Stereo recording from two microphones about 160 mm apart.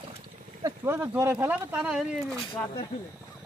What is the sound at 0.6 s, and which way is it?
Speech, 15° right (ahead or behind).